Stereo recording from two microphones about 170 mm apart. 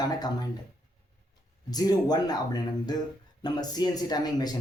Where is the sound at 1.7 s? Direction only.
20° left (ahead or behind).